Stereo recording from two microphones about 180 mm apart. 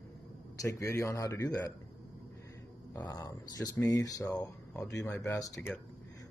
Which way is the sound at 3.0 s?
20° left (ahead or behind).